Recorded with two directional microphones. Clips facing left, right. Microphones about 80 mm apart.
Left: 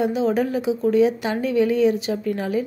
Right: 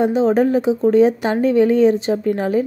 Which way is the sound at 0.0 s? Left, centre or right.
Right.